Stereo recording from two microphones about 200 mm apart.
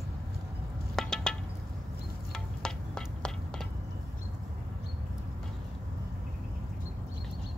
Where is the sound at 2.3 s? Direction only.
5° left (ahead or behind).